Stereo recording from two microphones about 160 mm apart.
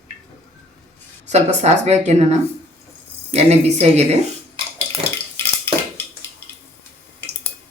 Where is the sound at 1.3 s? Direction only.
45° right (ahead or behind).